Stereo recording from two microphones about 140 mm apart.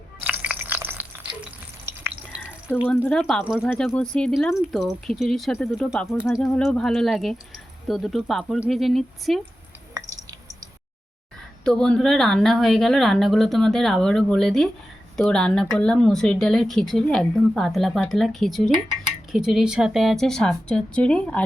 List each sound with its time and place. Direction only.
0.2 s a sound: 10° right (ahead or behind)
1.8 s stir: 20° right (ahead or behind)
2.8 s speech: 10° left (ahead or behind)
3.7 s speech: 5° left (ahead or behind)
5.9 s speech: centre (ahead or behind)
11.6 s speech: 5° left (ahead or behind)